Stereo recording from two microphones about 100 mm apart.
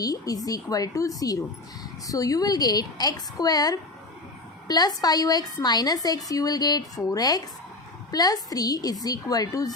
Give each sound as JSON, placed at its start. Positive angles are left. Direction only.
{"t": 0.0, "sound": "a woman's voice", "side_deg": 40}